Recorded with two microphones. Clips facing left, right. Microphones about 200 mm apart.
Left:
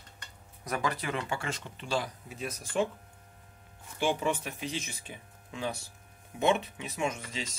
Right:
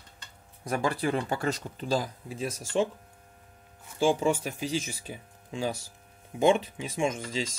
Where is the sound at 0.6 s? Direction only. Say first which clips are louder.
Right 5 dB; 30° right (ahead or behind).